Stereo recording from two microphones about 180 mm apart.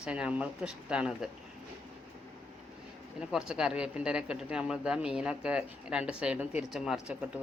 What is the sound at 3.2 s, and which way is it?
A man's voice, 5° right (ahead or behind).